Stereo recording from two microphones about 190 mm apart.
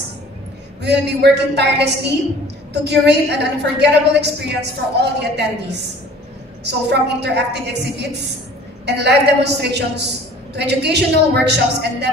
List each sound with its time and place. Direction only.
0.8 s a woman's voice: 60° right (ahead or behind)